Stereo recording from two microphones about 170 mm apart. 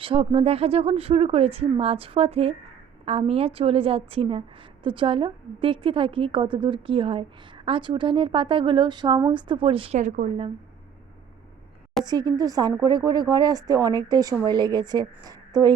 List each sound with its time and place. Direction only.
0.0 s a woman's voice: 30° right (ahead or behind)
10.0 s a woman's voice: 50° right (ahead or behind)
12.0 s speech: 25° right (ahead or behind)